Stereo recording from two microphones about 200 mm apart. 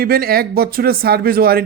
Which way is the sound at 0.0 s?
50° right (ahead or behind).